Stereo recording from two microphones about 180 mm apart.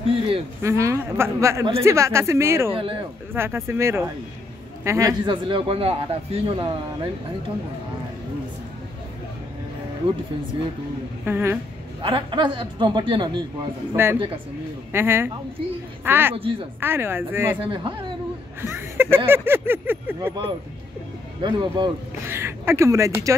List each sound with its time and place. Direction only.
0.6 s speech: 15° right (ahead or behind)
2.7 s speech: 30° right (ahead or behind)
3.3 s speech: 15° right (ahead or behind); by 7.1 s 30° right (ahead or behind)
11.2 s speech: 10° right (ahead or behind)
12.0 s speech: 30° right (ahead or behind)
14.0 s speech: 10° right (ahead or behind)
16.3 s speech: 30° right (ahead or behind)
16.8 s speech: 10° right (ahead or behind)
17.6 s speech: 30° right (ahead or behind)
18.6 s speech: 15° right (ahead or behind)
21.4 s speech: 25° right (ahead or behind)
22.2 s speech: 15° right (ahead or behind)